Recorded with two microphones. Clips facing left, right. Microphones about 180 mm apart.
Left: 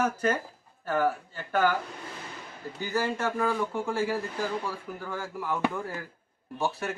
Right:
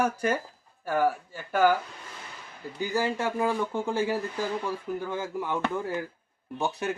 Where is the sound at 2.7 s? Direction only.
15° right (ahead or behind).